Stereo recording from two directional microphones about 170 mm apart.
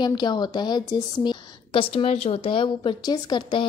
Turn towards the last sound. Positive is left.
turn(degrees=30)  # may be behind; listen again after turning